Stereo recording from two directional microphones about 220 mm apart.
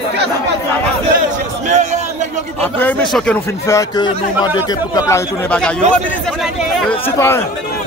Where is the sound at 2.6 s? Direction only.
5° left (ahead or behind).